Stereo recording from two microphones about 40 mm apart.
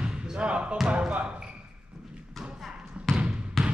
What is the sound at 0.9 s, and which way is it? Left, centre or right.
Speech, right.